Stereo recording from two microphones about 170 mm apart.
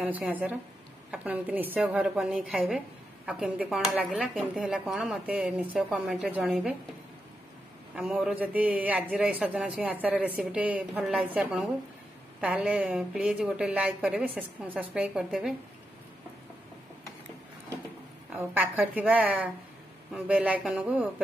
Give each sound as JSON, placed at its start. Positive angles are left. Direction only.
{"t": 0.0, "sound": "speech", "side_deg": -10}
{"t": 7.9, "sound": "speech", "side_deg": -5}
{"t": 18.3, "sound": "speech", "side_deg": -10}